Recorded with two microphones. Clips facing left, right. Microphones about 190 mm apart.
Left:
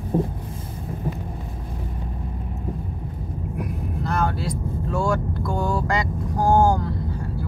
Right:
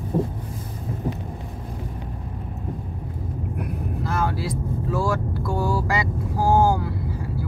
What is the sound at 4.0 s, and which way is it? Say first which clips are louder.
Vehicle: left 1 dB; 5° right (ahead or behind).